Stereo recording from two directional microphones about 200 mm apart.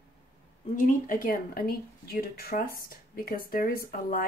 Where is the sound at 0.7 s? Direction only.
40° left (ahead or behind).